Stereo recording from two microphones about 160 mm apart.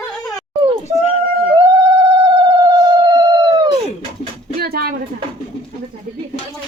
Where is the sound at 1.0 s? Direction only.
40° left (ahead or behind).